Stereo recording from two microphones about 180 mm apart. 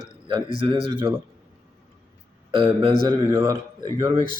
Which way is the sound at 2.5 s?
30° right (ahead or behind).